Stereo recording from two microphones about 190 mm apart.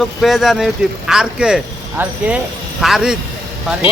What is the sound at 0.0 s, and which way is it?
Speech, centre (ahead or behind).